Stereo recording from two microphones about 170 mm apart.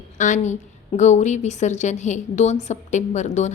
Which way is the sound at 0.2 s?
45° left (ahead or behind).